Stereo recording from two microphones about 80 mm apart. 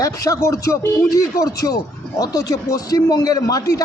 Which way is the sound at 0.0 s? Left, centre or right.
Left.